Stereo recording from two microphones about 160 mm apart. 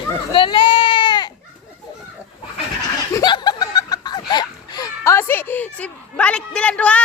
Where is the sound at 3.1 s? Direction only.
25° left (ahead or behind).